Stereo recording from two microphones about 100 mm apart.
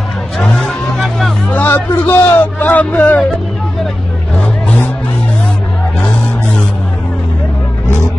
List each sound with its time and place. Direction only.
0.4 s music: 10° left (ahead or behind)
1.5 s a sound: 20° left (ahead or behind)
4.4 s vehicle: 15° left (ahead or behind)